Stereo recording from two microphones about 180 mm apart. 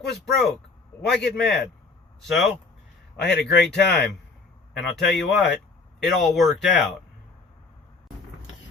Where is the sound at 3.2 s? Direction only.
65° left (ahead or behind).